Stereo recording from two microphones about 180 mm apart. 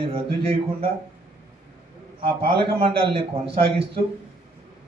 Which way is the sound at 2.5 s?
30° right (ahead or behind).